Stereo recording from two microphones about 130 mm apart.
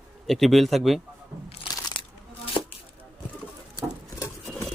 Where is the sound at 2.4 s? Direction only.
45° left (ahead or behind).